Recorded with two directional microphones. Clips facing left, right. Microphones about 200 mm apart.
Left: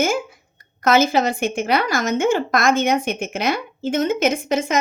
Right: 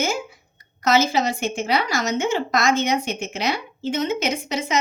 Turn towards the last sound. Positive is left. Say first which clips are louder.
# left 5 dB
turn(degrees=50)  # may be behind; listen again after turning